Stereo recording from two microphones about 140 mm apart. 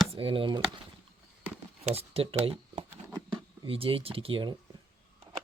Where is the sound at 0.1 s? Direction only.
40° right (ahead or behind).